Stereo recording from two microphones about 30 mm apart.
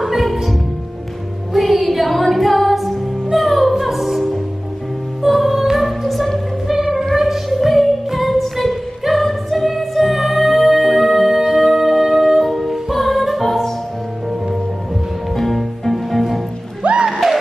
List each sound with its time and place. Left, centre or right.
0.0 s music: centre
5.9 s music: centre
6.7 s music: centre
12.9 s music: centre
15.3 s music: centre